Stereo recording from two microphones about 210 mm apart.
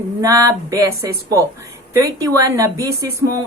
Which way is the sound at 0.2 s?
15° right (ahead or behind).